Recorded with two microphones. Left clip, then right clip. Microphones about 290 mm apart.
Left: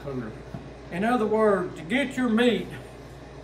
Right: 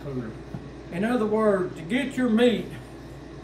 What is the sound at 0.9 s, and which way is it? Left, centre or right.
A man's voice, centre.